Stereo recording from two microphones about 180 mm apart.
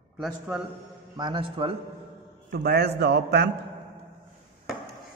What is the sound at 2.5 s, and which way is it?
Speech, 65° right (ahead or behind).